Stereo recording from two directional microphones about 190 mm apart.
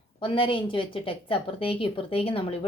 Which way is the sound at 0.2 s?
25° left (ahead or behind).